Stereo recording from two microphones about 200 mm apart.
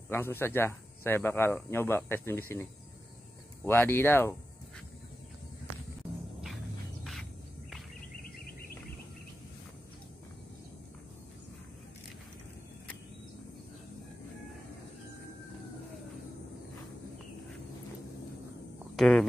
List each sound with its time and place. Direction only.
0.1 s speech: 10° left (ahead or behind)
8.2 s a sound: 50° left (ahead or behind)
18.9 s cricket: centre (ahead or behind)